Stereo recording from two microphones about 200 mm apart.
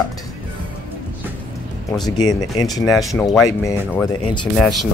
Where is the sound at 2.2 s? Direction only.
20° left (ahead or behind).